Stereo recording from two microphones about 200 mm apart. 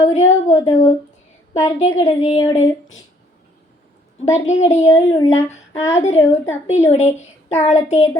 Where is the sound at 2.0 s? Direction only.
30° left (ahead or behind).